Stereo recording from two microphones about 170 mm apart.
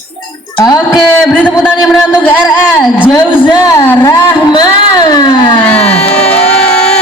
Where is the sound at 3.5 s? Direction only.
20° left (ahead or behind).